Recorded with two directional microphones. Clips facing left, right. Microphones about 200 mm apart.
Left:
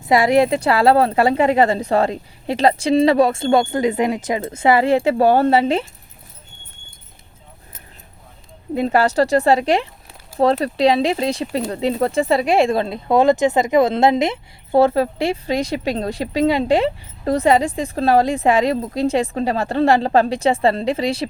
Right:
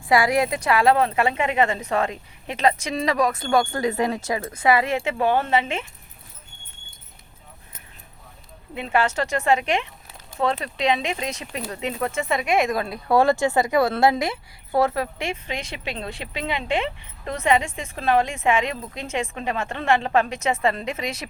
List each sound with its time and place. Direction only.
0.1 s speech: 25° left (ahead or behind)
8.7 s speech: 40° left (ahead or behind)